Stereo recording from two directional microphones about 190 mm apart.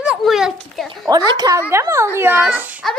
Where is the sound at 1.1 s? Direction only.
20° right (ahead or behind).